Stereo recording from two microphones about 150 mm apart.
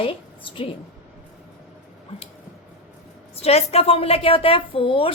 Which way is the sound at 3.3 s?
45° left (ahead or behind).